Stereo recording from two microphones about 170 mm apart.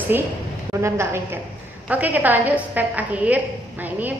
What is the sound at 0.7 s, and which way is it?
A woman's voice, 15° right (ahead or behind).